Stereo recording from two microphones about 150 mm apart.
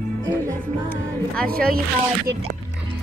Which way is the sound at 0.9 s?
75° right (ahead or behind).